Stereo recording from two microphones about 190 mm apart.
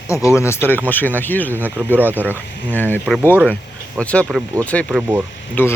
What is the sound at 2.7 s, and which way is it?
Speech, 10° left (ahead or behind).